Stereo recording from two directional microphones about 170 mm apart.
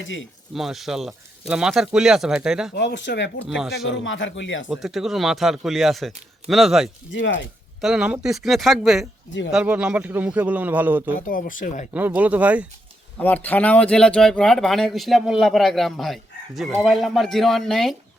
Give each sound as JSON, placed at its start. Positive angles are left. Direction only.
{"t": 0.5, "sound": "speech", "side_deg": 0}
{"t": 2.7, "sound": "speech", "side_deg": 85}
{"t": 3.6, "sound": "speech", "side_deg": 0}
{"t": 3.8, "sound": "speech", "side_deg": 90}
{"t": 4.7, "sound": "speech", "side_deg": 0}
{"t": 7.1, "sound": "speech", "side_deg": 90}
{"t": 7.8, "sound": "a man's voice", "side_deg": -5}
{"t": 11.3, "sound": "speech", "side_deg": 55}
{"t": 11.9, "sound": "a man's voice", "side_deg": -10}
{"t": 13.1, "sound": "speech", "side_deg": 10}